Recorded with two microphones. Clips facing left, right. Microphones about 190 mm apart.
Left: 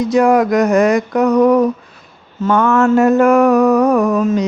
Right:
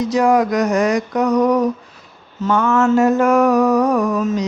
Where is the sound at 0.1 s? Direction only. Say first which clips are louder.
Left 4 dB; 55° left (ahead or behind).